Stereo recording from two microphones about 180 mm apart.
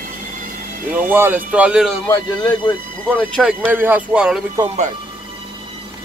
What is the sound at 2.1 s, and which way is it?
Speech, 25° left (ahead or behind).